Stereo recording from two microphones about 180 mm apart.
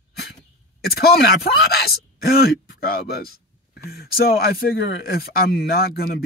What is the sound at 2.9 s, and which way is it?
Speech, 60° left (ahead or behind).